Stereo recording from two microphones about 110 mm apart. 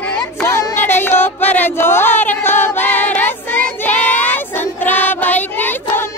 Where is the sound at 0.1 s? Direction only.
20° left (ahead or behind).